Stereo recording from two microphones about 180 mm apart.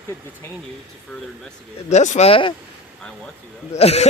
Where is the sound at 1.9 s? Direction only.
40° left (ahead or behind).